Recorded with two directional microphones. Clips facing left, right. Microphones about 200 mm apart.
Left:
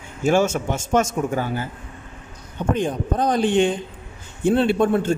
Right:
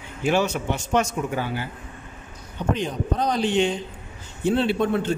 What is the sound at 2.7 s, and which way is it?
Speech, 50° left (ahead or behind).